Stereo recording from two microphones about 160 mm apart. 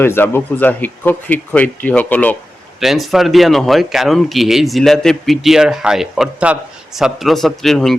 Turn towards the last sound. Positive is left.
turn(degrees=0)  # may be behind; listen again after turning